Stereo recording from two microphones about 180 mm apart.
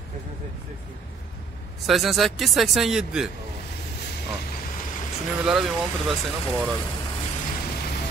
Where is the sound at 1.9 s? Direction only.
Centre (ahead or behind).